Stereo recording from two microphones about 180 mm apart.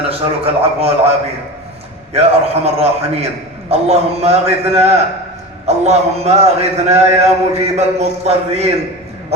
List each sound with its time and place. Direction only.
0.1 s a man's voice: 35° right (ahead or behind)
2.1 s a man's voice: 35° right (ahead or behind)